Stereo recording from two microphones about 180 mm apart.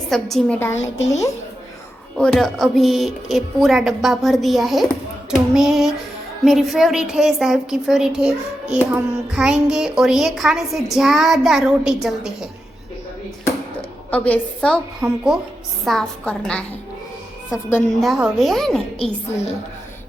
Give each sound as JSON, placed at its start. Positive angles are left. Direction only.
{"t": 0.1, "sound": "a woman's voice", "side_deg": 0}
{"t": 2.1, "sound": "a woman's voice", "side_deg": 5}
{"t": 14.1, "sound": "a woman's voice", "side_deg": 5}
{"t": 18.0, "sound": "a woman's voice", "side_deg": 0}
{"t": 18.9, "sound": "a woman's voice", "side_deg": 35}